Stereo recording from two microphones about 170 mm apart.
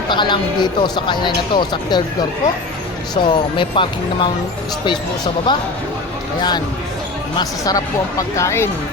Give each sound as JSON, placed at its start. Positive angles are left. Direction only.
{"t": 0.1, "sound": "speech", "side_deg": 25}
{"t": 3.2, "sound": "speech", "side_deg": 30}
{"t": 7.3, "sound": "speech", "side_deg": 20}